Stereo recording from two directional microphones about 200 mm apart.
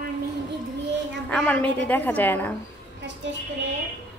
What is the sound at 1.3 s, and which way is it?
A woman's voice, 5° left (ahead or behind).